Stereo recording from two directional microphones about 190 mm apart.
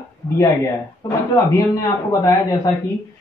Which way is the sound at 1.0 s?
20° left (ahead or behind).